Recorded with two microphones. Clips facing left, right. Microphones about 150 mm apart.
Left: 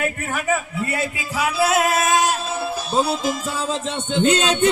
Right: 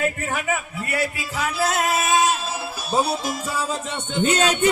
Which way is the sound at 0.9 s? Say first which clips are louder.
Right 3 dB; 25° left (ahead or behind).